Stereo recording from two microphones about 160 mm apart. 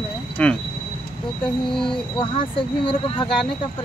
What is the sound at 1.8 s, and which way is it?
Speech, 30° left (ahead or behind).